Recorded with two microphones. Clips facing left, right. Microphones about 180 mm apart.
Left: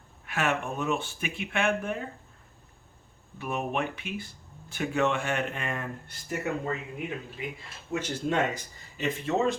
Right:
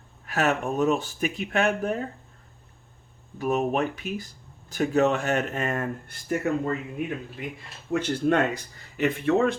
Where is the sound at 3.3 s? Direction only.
40° right (ahead or behind).